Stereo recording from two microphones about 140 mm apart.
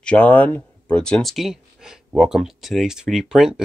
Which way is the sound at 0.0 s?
10° left (ahead or behind).